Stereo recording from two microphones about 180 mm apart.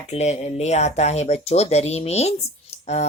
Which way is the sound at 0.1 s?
35° left (ahead or behind).